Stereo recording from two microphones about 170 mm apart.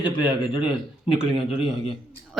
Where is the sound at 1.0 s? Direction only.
30° left (ahead or behind).